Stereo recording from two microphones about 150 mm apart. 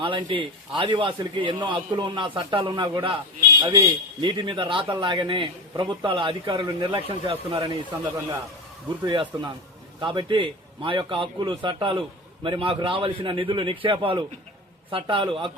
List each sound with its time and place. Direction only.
0.0 s a man's voice: 35° right (ahead or behind)
9.0 s a man's voice: 30° right (ahead or behind)